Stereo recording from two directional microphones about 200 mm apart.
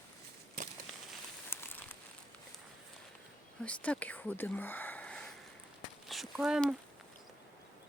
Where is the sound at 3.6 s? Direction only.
5° left (ahead or behind).